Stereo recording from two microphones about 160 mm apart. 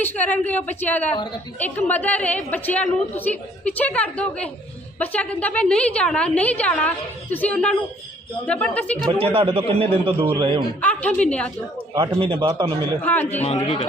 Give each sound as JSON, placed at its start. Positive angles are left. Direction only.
{"t": 0.0, "sound": "a woman's voice", "side_deg": 10}
{"t": 9.1, "sound": "a man's voice", "side_deg": -35}
{"t": 10.8, "sound": "a woman's voice", "side_deg": 10}
{"t": 12.2, "sound": "a man's voice", "side_deg": -30}
{"t": 13.3, "sound": "speech", "side_deg": 40}